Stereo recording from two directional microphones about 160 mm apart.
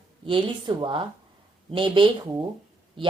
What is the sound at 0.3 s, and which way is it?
A woman's voice, 30° right (ahead or behind).